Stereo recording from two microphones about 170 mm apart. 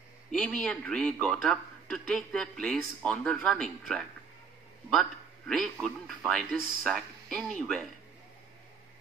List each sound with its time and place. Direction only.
0.3 s a man's voice: 5° left (ahead or behind)
5.5 s a man's voice: centre (ahead or behind)